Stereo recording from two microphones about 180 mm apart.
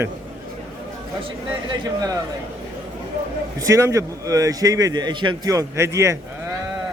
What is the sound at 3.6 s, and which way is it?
A man's voice, 15° right (ahead or behind).